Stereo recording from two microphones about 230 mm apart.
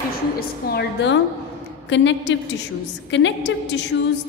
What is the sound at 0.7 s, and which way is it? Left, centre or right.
A woman's voice, left.